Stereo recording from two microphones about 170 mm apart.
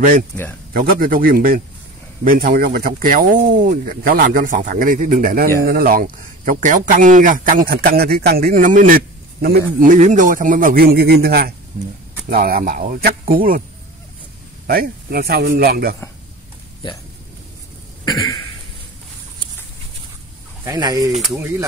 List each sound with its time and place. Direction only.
0.7 s speech: 55° right (ahead or behind)
14.7 s speech: 60° right (ahead or behind)
20.6 s speech: 20° right (ahead or behind)